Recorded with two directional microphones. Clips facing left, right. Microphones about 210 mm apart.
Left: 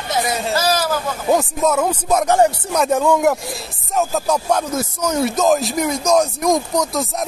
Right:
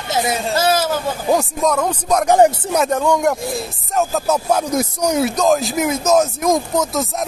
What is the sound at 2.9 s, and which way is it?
Speech, 5° left (ahead or behind).